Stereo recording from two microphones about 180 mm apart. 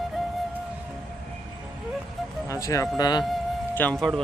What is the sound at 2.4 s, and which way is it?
Speech, 20° left (ahead or behind).